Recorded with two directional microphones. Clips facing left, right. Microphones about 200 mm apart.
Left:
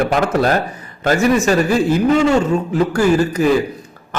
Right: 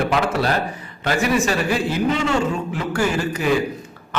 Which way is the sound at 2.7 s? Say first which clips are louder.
Left 7 dB; 40° left (ahead or behind).